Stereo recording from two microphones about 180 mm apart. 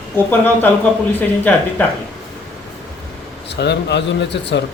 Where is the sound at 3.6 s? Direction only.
70° left (ahead or behind).